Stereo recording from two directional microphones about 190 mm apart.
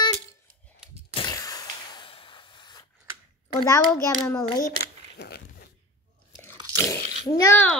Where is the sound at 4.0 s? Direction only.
15° left (ahead or behind).